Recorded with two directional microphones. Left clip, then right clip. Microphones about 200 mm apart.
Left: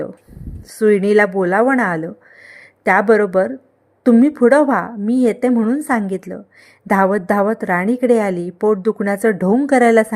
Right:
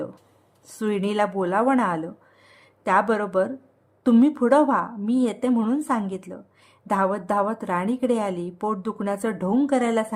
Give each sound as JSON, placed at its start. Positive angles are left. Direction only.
{"t": 0.7, "sound": "a woman's voice", "side_deg": 20}